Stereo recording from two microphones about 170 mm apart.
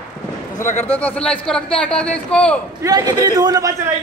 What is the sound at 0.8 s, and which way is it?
A man's voice, 10° left (ahead or behind).